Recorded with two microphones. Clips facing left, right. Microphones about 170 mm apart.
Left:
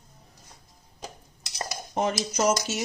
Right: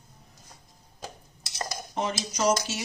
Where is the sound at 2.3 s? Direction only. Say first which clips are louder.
Right 1 dB; 45° left (ahead or behind).